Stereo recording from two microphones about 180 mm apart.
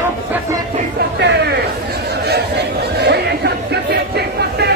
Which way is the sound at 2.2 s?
65° right (ahead or behind).